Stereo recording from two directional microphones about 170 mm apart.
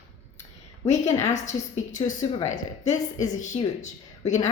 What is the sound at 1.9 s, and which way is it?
A woman's voice, 45° left (ahead or behind).